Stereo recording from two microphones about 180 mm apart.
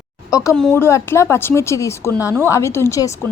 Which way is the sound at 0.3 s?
20° left (ahead or behind).